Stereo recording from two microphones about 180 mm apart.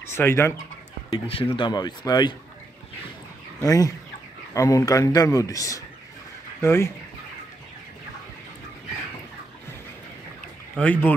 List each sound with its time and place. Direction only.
0.1 s chicken: 15° left (ahead or behind)
1.1 s a man's voice: 30° left (ahead or behind)
3.6 s a man's voice: 20° left (ahead or behind)
6.6 s chicken: 15° left (ahead or behind)
10.8 s chicken: 10° left (ahead or behind)